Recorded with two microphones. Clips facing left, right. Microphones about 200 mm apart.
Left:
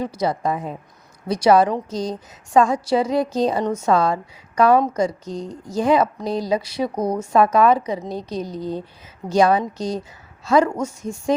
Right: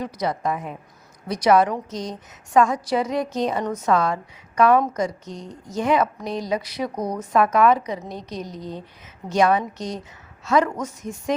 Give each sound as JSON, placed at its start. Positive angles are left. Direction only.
{"t": 0.0, "sound": "a woman's voice", "side_deg": 30}